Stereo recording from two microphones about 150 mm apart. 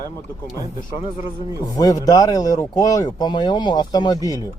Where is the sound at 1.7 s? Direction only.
25° left (ahead or behind).